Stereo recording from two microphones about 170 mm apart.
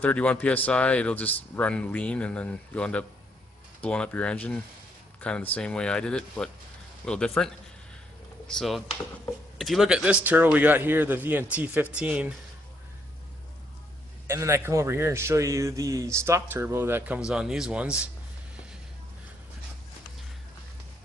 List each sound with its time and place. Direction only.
0.0 s a man's voice: 10° left (ahead or behind); by 12.3 s 10° right (ahead or behind)
14.3 s a man's voice: 15° right (ahead or behind)